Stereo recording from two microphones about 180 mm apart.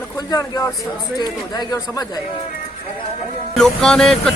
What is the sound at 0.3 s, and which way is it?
Speech, 20° left (ahead or behind).